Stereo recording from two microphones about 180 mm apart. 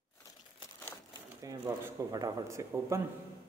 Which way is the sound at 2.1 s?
20° right (ahead or behind).